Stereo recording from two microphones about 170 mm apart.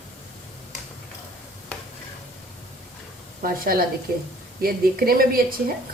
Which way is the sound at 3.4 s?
60° right (ahead or behind).